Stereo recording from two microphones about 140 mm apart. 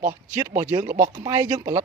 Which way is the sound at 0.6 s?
20° right (ahead or behind).